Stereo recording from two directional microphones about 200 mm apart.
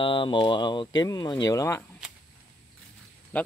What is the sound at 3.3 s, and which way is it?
Speech, 10° left (ahead or behind).